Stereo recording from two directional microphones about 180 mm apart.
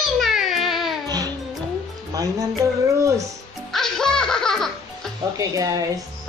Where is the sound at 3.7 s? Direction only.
Centre (ahead or behind).